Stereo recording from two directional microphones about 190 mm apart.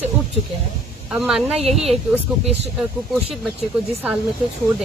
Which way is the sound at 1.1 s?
5° right (ahead or behind).